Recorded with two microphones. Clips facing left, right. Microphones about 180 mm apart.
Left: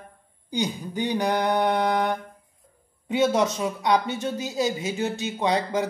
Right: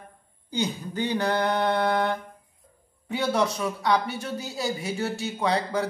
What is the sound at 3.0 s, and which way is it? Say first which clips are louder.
Speech: left 3 dB; 20° left (ahead or behind).